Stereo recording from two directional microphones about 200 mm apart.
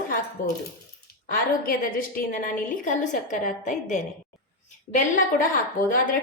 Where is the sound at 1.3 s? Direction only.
45° left (ahead or behind).